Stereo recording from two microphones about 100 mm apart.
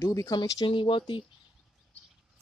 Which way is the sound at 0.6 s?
60° left (ahead or behind).